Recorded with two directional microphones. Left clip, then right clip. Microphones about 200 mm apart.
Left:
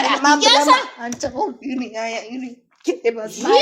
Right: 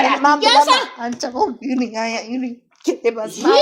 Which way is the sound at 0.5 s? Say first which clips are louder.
Right 1 dB; 35° right (ahead or behind).